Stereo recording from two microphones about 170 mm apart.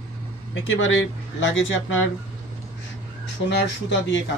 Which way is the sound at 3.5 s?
85° left.